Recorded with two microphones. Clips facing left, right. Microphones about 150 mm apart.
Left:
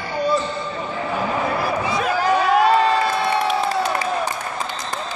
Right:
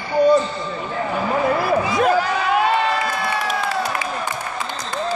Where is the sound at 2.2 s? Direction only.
40° left (ahead or behind).